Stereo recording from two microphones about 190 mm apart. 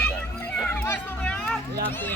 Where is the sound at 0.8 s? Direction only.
10° left (ahead or behind).